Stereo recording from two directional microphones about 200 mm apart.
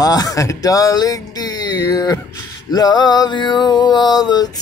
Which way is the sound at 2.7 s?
20° left (ahead or behind).